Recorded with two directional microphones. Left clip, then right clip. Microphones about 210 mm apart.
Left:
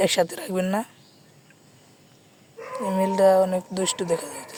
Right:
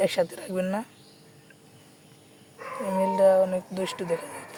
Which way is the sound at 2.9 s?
30° left (ahead or behind).